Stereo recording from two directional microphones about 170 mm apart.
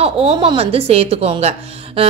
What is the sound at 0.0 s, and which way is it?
A woman's voice, 35° right (ahead or behind).